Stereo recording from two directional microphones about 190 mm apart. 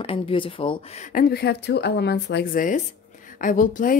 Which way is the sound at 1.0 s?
50° left (ahead or behind).